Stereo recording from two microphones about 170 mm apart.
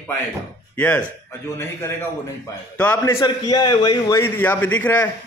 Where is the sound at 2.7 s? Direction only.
10° left (ahead or behind).